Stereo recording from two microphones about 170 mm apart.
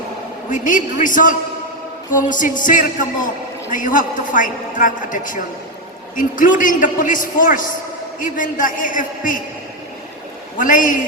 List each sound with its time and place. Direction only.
0.5 s a man's voice: 50° left (ahead or behind)
10.6 s a man's voice: 50° left (ahead or behind)